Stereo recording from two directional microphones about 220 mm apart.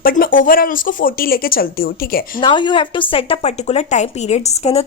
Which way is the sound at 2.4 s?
20° left (ahead or behind).